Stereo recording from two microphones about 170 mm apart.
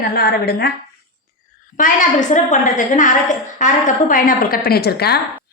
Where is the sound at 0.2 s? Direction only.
65° left (ahead or behind).